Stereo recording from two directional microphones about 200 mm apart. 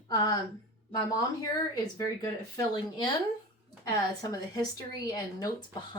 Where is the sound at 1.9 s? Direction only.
20° left (ahead or behind).